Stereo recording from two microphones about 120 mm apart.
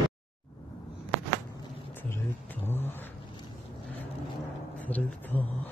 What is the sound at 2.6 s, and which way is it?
Car, 20° left (ahead or behind).